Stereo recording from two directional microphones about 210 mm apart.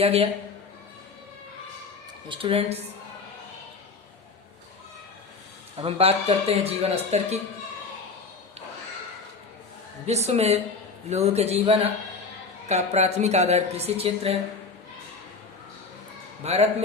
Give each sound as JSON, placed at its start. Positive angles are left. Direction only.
{"t": 0.0, "sound": "speech", "side_deg": -30}
{"t": 2.3, "sound": "speech", "side_deg": -25}
{"t": 5.7, "sound": "speech", "side_deg": -25}
{"t": 10.1, "sound": "a woman's voice", "side_deg": -30}
{"t": 16.4, "sound": "a woman's voice", "side_deg": -30}